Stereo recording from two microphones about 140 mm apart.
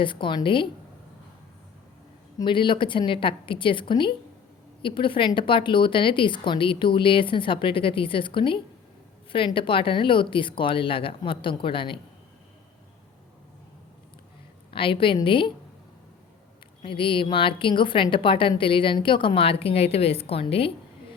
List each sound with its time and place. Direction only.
0.0 s a woman's voice: 35° left (ahead or behind)
2.4 s a woman's voice: 35° left (ahead or behind)
14.7 s a woman's voice: 40° left (ahead or behind)
16.8 s a woman's voice: 40° left (ahead or behind)